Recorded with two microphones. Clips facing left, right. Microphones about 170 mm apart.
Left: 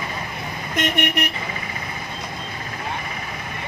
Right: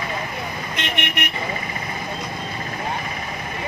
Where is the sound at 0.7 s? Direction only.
45° left (ahead or behind).